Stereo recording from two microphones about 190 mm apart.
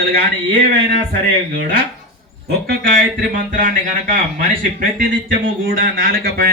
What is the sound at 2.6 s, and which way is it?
Speech, 45° right (ahead or behind).